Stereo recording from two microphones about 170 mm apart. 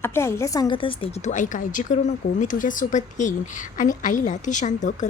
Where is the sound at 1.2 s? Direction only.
45° left (ahead or behind).